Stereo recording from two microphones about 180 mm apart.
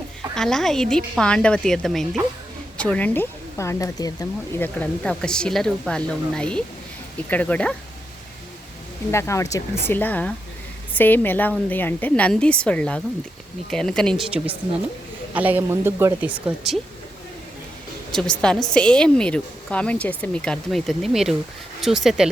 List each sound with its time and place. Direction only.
0.3 s a woman's voice: 5° left (ahead or behind)
9.1 s a woman's voice: 15° left (ahead or behind); by 16.3 s 15° right (ahead or behind)
18.1 s a woman's voice: 5° left (ahead or behind)